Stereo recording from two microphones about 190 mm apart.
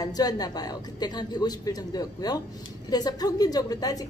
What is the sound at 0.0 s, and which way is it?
Speech, 20° left (ahead or behind).